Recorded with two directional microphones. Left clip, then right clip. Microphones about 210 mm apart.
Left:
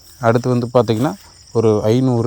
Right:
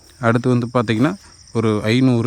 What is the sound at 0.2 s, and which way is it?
Speech, 25° right (ahead or behind).